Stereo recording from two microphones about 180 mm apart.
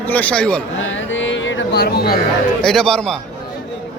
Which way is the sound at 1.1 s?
90° left.